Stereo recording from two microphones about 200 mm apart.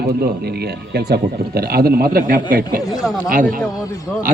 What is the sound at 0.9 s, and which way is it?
A man's voice, 50° right (ahead or behind).